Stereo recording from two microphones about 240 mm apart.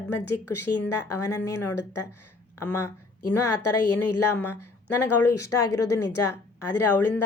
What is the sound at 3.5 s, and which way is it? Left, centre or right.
A woman's voice, left.